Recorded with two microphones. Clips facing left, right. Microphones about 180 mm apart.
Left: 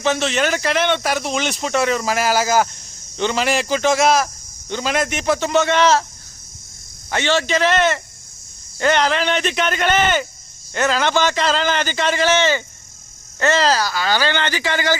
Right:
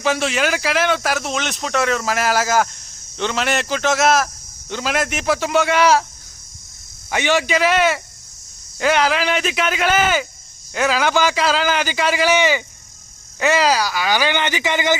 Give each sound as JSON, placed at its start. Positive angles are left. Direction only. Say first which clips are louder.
{"t": 0.0, "sound": "speech", "louder": "left 1 dB", "side_deg": -5}
{"t": 7.1, "sound": "a man's voice", "louder": "even", "side_deg": -15}